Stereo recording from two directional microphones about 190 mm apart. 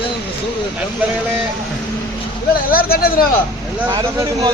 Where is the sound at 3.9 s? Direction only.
20° right (ahead or behind).